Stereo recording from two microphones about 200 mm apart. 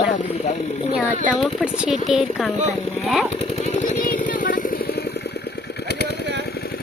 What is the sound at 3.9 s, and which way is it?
Vehicle, 40° left (ahead or behind).